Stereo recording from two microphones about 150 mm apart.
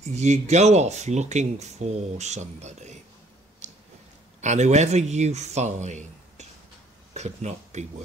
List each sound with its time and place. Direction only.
0.1 s speech: 50° right (ahead or behind)
4.4 s speech: 50° right (ahead or behind)